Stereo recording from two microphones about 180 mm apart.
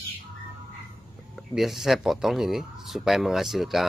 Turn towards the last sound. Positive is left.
turn(degrees=0)  # may be behind; listen again after turning